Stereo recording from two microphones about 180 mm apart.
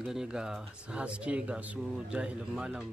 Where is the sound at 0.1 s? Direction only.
5° right (ahead or behind).